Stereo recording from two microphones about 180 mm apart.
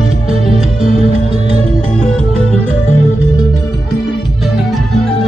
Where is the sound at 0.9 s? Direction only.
35° right (ahead or behind).